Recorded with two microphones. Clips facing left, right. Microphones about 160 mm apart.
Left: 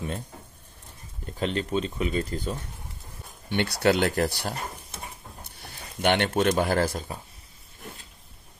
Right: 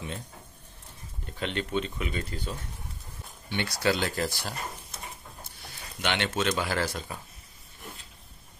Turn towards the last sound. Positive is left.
turn(degrees=50)  # may be behind; listen again after turning